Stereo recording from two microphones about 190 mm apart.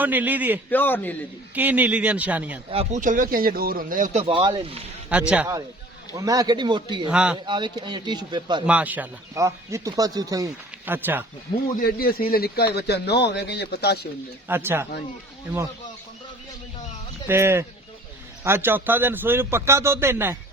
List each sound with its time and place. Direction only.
0.0 s speech: 10° right (ahead or behind)
0.7 s a man's voice: 10° left (ahead or behind)
1.5 s speech: 10° right (ahead or behind)
2.6 s speech: 30° right (ahead or behind)
3.0 s speech: 45° right (ahead or behind); by 4.8 s 25° right (ahead or behind)
5.0 s speech: 5° right (ahead or behind)
6.1 s speech: 20° right (ahead or behind)
7.1 s speech: 5° right (ahead or behind)
7.4 s speech: 25° right (ahead or behind)
8.6 s speech: 5° right (ahead or behind)
11.8 s a man's voice: 50° left (ahead or behind)
14.4 s speech: 10° right (ahead or behind)
17.2 s speech: 10° right (ahead or behind)